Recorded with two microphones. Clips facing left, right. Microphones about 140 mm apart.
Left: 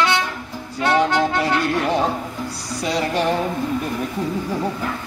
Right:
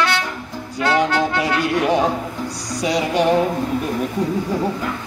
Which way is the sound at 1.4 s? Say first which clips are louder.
Right 1 dB; 10° right (ahead or behind).